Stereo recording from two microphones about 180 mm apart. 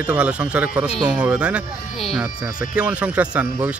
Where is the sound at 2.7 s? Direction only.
5° right (ahead or behind).